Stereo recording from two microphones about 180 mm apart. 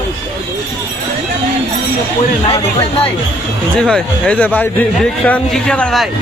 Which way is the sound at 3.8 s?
5° left (ahead or behind).